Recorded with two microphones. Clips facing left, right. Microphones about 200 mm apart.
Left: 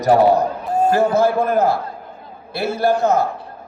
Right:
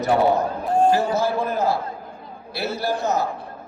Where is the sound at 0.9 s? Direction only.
55° left (ahead or behind).